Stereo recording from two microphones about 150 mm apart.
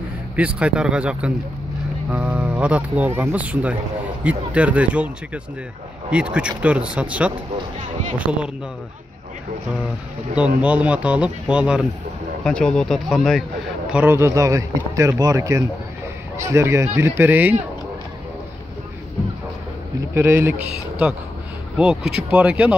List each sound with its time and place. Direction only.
0.4 s speech: 5° right (ahead or behind)
10.6 s speech: 10° right (ahead or behind)
12.4 s speech: 5° left (ahead or behind)
13.8 s speech: 10° right (ahead or behind)
20.2 s speech: 15° right (ahead or behind)
21.7 s speech: 5° right (ahead or behind)